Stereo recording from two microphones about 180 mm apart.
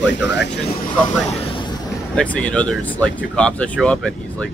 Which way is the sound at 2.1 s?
10° left (ahead or behind).